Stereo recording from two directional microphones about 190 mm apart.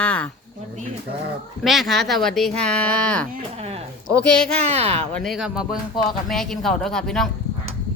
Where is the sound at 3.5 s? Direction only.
30° right (ahead or behind).